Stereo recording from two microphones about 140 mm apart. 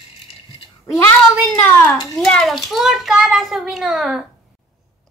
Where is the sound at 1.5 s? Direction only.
10° left (ahead or behind).